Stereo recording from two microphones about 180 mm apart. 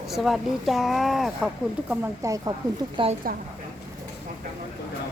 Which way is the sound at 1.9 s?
15° right (ahead or behind).